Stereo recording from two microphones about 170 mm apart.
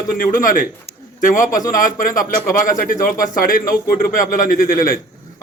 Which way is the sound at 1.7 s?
50° left (ahead or behind).